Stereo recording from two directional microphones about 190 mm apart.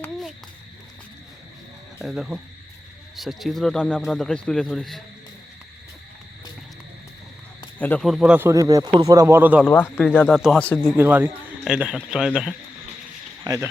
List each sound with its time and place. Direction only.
2.0 s a man's voice: centre (ahead or behind)
7.8 s speech: 5° left (ahead or behind); by 9.6 s 10° right (ahead or behind)
9.6 s speech: 10° left (ahead or behind)
10.9 s a man's voice: 10° right (ahead or behind)
13.4 s speech: 20° right (ahead or behind)